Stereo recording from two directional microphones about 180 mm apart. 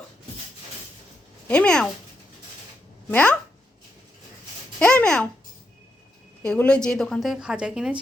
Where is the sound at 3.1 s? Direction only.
5° left (ahead or behind).